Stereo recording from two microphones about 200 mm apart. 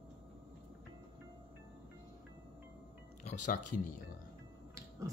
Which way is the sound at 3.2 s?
40° left (ahead or behind).